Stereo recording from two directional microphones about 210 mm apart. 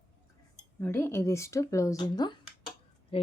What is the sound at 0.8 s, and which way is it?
Speech, 10° left (ahead or behind).